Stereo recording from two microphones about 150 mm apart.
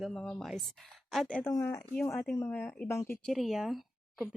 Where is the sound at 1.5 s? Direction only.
20° left (ahead or behind).